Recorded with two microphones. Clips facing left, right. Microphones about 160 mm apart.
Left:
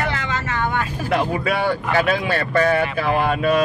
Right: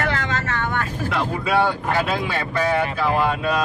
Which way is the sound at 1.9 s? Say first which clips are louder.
Left 3 dB; 65° left (ahead or behind).